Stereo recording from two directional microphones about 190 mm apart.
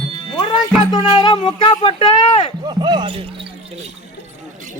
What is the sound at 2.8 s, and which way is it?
Basketball bounce, 25° right (ahead or behind).